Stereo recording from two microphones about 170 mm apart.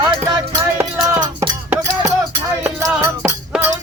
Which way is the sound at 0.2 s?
25° right (ahead or behind).